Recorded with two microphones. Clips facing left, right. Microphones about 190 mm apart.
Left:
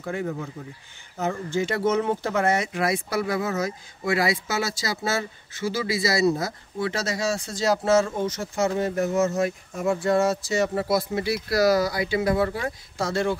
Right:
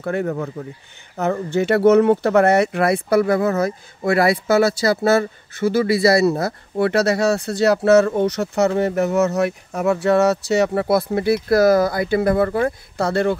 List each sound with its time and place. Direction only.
0.0 s speech: 65° right (ahead or behind)